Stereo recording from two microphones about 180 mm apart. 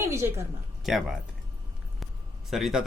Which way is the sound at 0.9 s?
Centre (ahead or behind).